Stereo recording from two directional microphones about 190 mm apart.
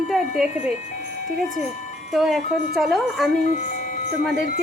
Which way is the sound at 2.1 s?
Centre (ahead or behind).